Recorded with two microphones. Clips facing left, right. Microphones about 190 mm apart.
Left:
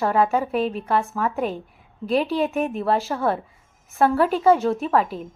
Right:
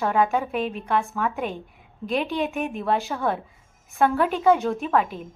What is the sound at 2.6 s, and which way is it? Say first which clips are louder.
Speech: left 4 dB; 35° left (ahead or behind).